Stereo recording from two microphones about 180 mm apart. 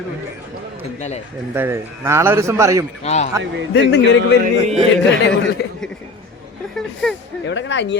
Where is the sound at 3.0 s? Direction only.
40° left (ahead or behind).